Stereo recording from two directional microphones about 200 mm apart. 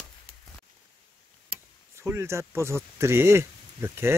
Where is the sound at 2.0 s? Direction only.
15° right (ahead or behind).